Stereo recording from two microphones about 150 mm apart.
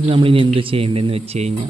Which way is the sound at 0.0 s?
35° right (ahead or behind).